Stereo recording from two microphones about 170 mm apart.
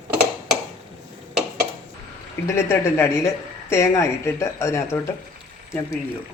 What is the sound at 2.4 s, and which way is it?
Speech, 15° left (ahead or behind).